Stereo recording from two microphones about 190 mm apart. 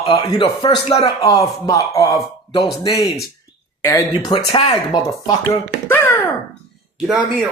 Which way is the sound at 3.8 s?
20° left (ahead or behind).